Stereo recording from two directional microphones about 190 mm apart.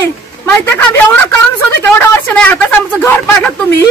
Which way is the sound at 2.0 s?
10° left (ahead or behind).